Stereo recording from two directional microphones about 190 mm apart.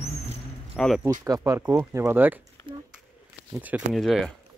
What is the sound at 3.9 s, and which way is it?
Speech, centre (ahead or behind).